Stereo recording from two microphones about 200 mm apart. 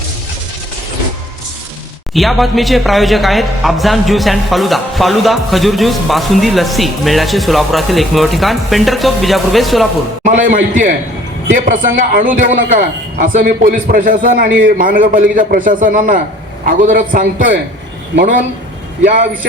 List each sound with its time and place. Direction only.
2.1 s speech: centre (ahead or behind)
10.2 s a man's voice: 40° right (ahead or behind)